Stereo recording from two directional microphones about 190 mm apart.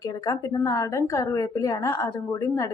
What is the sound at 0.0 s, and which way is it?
Speech, 20° left (ahead or behind).